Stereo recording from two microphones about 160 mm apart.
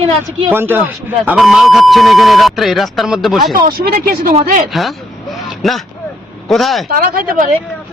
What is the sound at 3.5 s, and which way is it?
Speech, 65° right (ahead or behind).